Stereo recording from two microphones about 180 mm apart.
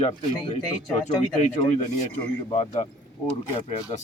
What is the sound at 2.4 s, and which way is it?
Speech, 30° left (ahead or behind).